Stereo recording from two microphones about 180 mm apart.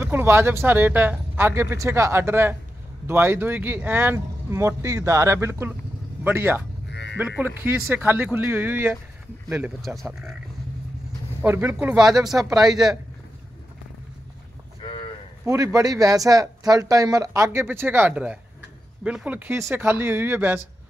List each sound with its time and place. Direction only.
0.0 s speech: 10° right (ahead or behind)
6.9 s frog: 70° left (ahead or behind)
7.2 s speech: 10° right (ahead or behind)
9.8 s speech: centre (ahead or behind)
11.4 s speech: 10° right (ahead or behind)
14.8 s cattle: 30° left (ahead or behind)
15.4 s speech: 20° right (ahead or behind)